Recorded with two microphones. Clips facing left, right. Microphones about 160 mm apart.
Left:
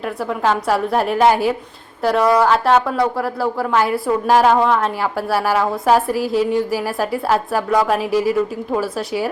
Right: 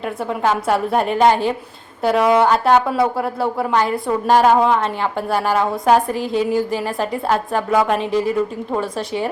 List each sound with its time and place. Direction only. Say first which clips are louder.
0.0 s a woman's voice: even; centre (ahead or behind)
2.2 s a woman's voice: even; 25° right (ahead or behind)
2.5 s a woman's voice: even; centre (ahead or behind)